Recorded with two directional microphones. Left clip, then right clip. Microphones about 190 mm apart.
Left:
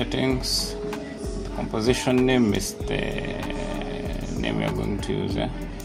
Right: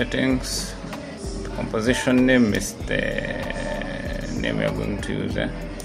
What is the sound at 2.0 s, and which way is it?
Speech, 25° left (ahead or behind).